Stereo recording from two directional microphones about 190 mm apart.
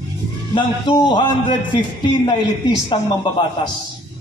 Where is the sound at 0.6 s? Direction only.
25° left (ahead or behind).